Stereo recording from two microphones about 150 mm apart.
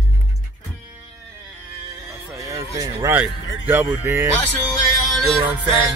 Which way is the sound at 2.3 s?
20° right (ahead or behind).